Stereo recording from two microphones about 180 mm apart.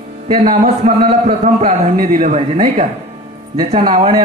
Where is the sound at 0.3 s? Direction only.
45° right (ahead or behind).